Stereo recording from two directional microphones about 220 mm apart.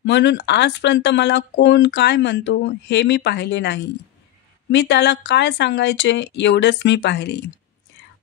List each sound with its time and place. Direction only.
0.0 s speech: 55° left (ahead or behind)